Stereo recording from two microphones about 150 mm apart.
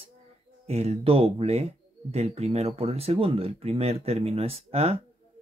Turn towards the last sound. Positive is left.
turn(degrees=-45)  # may be behind; listen again after turning